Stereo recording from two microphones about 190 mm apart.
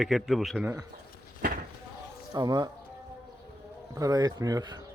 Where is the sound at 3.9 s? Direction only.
20° right (ahead or behind).